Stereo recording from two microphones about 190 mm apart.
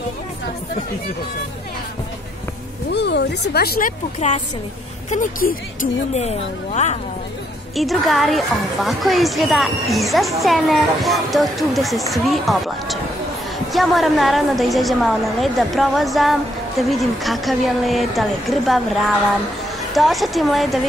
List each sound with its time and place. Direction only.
2.9 s speech: 60° left (ahead or behind)
5.1 s a woman's voice: 45° left (ahead or behind)
7.7 s a woman's voice: centre (ahead or behind)
19.9 s a woman's voice: centre (ahead or behind)